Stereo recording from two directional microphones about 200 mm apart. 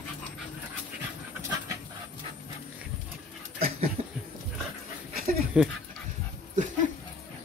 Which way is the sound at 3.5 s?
45° right (ahead or behind).